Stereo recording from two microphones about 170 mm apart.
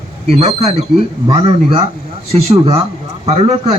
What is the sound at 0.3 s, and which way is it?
A man's voice, 40° right (ahead or behind).